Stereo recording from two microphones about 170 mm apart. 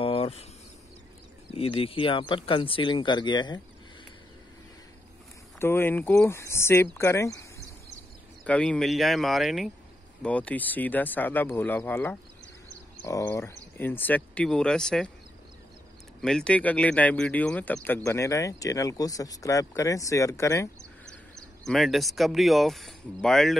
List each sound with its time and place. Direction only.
0.0 s a sound: 35° left (ahead or behind)
1.5 s speech: 35° left (ahead or behind)
5.6 s speech: 15° left (ahead or behind)
8.5 s speech: 5° left (ahead or behind)
16.2 s speech: 5° left (ahead or behind)
21.6 s speech: centre (ahead or behind)